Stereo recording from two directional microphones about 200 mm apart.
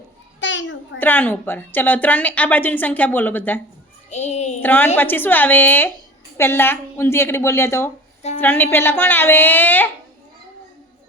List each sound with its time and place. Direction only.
0.3 s a sound: 65° left (ahead or behind)
0.9 s a woman's voice: 10° left (ahead or behind)
4.1 s a child's voice: 35° left (ahead or behind)
4.6 s a woman's voice: 10° left (ahead or behind)